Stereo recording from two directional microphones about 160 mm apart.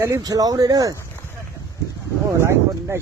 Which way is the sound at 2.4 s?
15° right (ahead or behind).